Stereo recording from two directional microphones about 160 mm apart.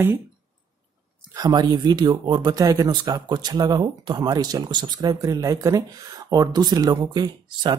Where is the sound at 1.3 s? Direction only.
25° right (ahead or behind).